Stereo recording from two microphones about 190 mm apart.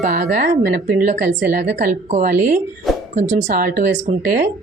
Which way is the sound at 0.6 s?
45° right (ahead or behind).